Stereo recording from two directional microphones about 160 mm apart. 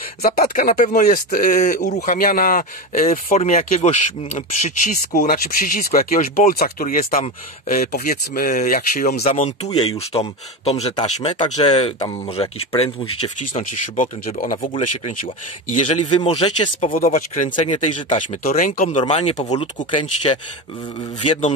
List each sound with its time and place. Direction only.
0.2 s speech: 65° left (ahead or behind)
2.0 s speech: 60° left (ahead or behind)
5.1 s speech: 65° left (ahead or behind)
9.2 s speech: 40° left (ahead or behind)
13.5 s speech: 50° left (ahead or behind)
14.7 s speech: 35° left (ahead or behind)
15.7 s speech: 45° left (ahead or behind)
16.2 s speech: 30° left (ahead or behind)
16.9 s speech: 55° left (ahead or behind)
18.9 s speech: 40° left (ahead or behind)